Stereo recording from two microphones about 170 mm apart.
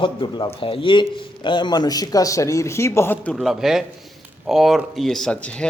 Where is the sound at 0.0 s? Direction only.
30° left (ahead or behind).